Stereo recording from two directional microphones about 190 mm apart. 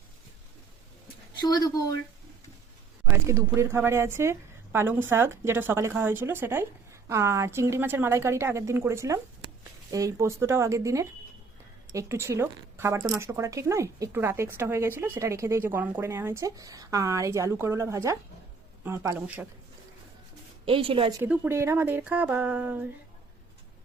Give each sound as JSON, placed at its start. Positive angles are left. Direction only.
{"t": 1.0, "sound": "a sound", "side_deg": 20}
{"t": 3.2, "sound": "speech", "side_deg": -15}
{"t": 20.7, "sound": "a woman's voice", "side_deg": -30}
{"t": 21.2, "sound": "speech", "side_deg": -10}